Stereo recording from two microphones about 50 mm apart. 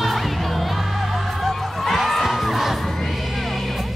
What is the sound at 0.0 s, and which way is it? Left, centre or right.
Music, centre.